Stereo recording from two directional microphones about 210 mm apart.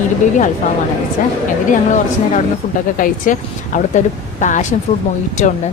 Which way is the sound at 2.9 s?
40° left (ahead or behind).